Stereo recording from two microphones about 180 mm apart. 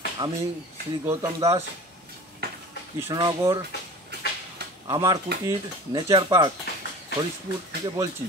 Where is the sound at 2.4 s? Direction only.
60° right (ahead or behind).